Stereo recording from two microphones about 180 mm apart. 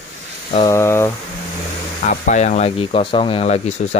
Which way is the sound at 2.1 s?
40° left (ahead or behind).